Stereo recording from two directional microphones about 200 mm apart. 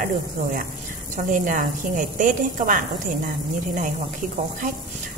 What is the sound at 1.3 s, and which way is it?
A woman's voice, 40° right (ahead or behind).